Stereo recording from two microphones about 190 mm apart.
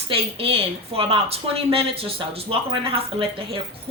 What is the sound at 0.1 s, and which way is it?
Speech, 30° right (ahead or behind).